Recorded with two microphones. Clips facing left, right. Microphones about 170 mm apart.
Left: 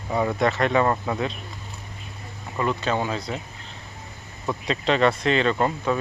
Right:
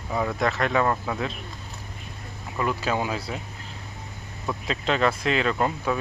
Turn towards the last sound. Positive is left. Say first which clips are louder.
# left 2 dB
turn(degrees=0)  # may be behind; listen again after turning